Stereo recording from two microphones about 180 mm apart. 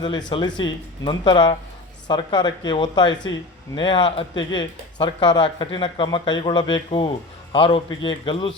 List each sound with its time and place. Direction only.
0.0 s speech: 25° left (ahead or behind)